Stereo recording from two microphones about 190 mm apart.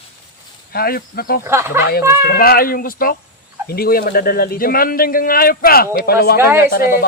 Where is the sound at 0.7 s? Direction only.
55° left (ahead or behind).